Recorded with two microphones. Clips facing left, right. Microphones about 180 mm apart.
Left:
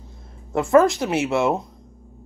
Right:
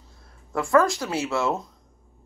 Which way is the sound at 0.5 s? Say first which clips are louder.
Left 5 dB; 25° left (ahead or behind).